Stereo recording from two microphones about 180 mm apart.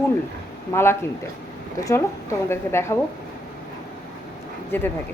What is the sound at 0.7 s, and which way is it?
A woman's voice, 15° left (ahead or behind).